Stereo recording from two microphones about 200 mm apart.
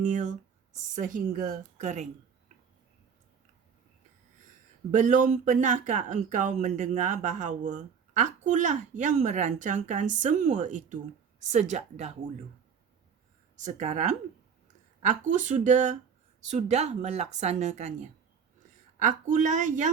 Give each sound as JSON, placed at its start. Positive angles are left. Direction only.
{"t": 0.0, "sound": "speech", "side_deg": -40}
{"t": 4.9, "sound": "speech", "side_deg": -40}
{"t": 13.6, "sound": "speech", "side_deg": -35}
{"t": 15.3, "sound": "speech", "side_deg": -40}